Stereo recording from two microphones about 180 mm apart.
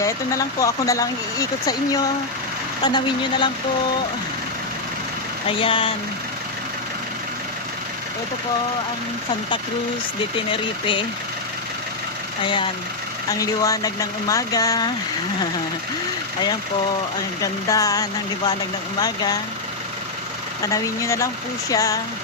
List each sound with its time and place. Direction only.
0.0 s speech: 20° left (ahead or behind)
5.5 s speech: 30° left (ahead or behind)
10.3 s speech: 30° left (ahead or behind)
13.2 s speech: 20° left (ahead or behind)
17.4 s speech: 20° left (ahead or behind)
20.7 s speech: 15° left (ahead or behind)